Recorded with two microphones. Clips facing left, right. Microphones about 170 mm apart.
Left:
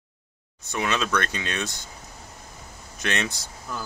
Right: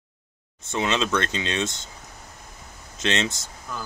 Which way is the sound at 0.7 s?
25° right (ahead or behind).